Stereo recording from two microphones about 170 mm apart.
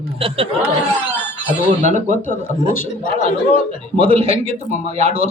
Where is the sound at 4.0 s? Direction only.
35° right (ahead or behind).